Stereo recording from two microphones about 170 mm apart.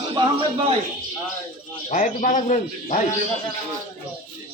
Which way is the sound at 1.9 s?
50° left (ahead or behind).